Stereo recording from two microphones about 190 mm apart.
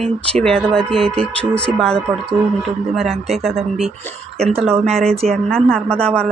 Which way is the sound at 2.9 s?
Centre (ahead or behind).